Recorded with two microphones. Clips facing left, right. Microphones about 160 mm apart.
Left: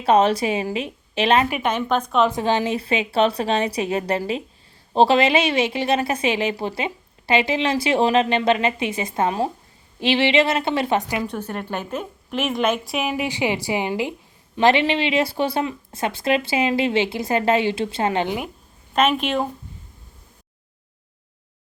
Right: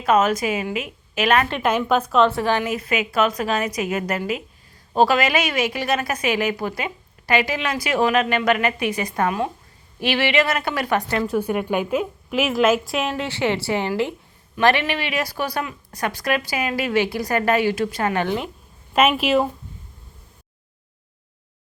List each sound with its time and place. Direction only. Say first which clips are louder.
0.0 s a woman's voice: left 1 dB; 30° left (ahead or behind)
1.6 s a woman's voice: right 2 dB; 5° right (ahead or behind)
2.2 s a woman's voice: even; 20° left (ahead or behind)
11.3 s a woman's voice: right 6 dB; 10° right (ahead or behind)
13.1 s a woman's voice: even; 15° left (ahead or behind)
18.9 s a woman's voice: right 2 dB; 5° right (ahead or behind)